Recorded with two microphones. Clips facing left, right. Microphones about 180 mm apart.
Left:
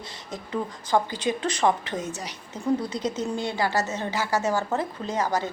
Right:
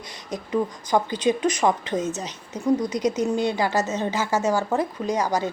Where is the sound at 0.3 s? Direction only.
15° right (ahead or behind).